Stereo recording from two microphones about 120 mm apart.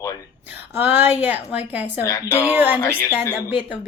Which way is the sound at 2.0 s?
25° left (ahead or behind).